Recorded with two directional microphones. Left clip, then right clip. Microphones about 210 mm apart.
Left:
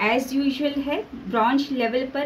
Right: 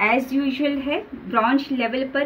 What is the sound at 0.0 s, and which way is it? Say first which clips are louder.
A woman's voice: right 2 dB; 25° right (ahead or behind).